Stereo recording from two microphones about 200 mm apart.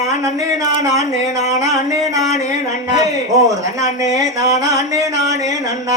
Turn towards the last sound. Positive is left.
turn(degrees=-15)  # may be behind; listen again after turning